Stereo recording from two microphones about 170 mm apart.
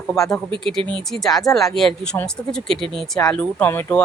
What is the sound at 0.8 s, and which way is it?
Speech, 30° right (ahead or behind).